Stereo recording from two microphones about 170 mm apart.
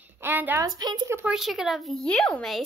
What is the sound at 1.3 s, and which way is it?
Speech, centre (ahead or behind).